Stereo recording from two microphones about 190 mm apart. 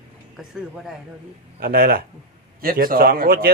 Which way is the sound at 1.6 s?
50° right (ahead or behind).